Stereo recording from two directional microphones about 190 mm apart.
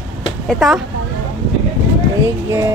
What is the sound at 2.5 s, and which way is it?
Speech, 15° right (ahead or behind).